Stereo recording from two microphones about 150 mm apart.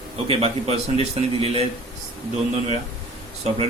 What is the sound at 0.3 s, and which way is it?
A man's voice, 40° right (ahead or behind).